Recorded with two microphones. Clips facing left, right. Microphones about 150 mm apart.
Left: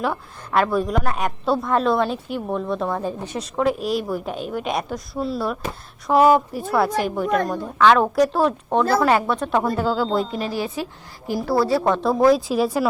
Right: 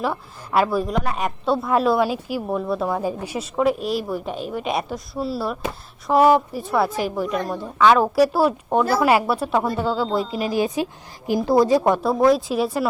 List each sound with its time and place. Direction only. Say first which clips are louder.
0.0 s a woman's voice: even; 5° right (ahead or behind)
10.4 s a woman's voice: right 4 dB; 15° right (ahead or behind)
12.0 s a woman's voice: left 1 dB; centre (ahead or behind)